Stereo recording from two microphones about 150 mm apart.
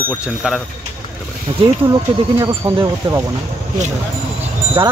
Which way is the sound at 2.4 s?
20° right (ahead or behind).